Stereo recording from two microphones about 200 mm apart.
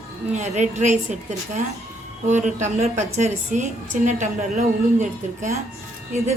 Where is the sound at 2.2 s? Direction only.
35° right (ahead or behind).